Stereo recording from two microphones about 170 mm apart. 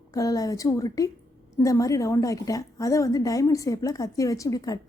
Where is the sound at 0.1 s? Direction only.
20° left (ahead or behind).